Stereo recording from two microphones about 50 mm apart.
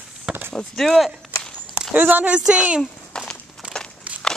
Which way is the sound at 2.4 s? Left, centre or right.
Centre.